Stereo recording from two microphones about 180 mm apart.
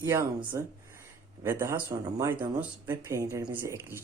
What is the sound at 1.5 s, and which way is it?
Speech, 15° right (ahead or behind).